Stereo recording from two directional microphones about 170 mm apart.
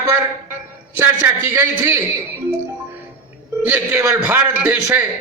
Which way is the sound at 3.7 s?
15° right (ahead or behind).